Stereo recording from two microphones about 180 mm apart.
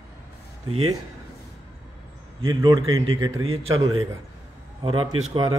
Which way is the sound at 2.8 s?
90° right.